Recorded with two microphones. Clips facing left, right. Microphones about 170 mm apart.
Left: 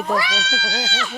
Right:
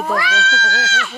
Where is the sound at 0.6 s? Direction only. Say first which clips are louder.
Right 4 dB; 15° left (ahead or behind).